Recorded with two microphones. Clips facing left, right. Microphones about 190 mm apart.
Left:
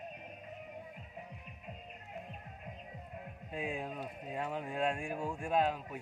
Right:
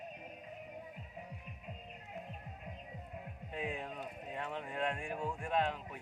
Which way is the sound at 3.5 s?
10° left (ahead or behind).